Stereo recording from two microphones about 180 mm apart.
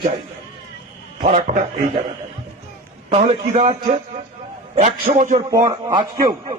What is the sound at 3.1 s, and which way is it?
Speech, 35° right (ahead or behind).